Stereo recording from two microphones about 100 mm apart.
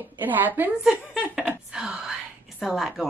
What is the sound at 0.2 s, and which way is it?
Speech, 20° right (ahead or behind).